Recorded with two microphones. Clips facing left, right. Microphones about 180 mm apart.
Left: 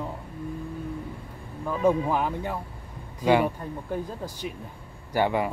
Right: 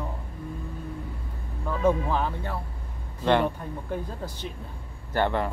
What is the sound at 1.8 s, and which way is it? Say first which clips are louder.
Speech: left 1 dB; 15° left (ahead or behind).